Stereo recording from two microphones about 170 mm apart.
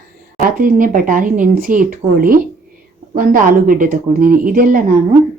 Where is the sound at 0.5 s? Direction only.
55° right (ahead or behind).